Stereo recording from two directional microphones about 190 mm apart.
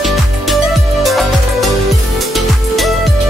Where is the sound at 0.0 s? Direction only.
Centre (ahead or behind).